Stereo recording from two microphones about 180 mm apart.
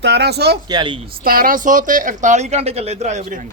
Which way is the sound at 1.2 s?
55° right (ahead or behind).